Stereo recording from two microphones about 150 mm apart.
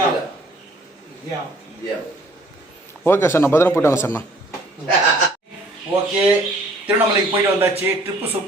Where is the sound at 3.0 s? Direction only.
15° left (ahead or behind).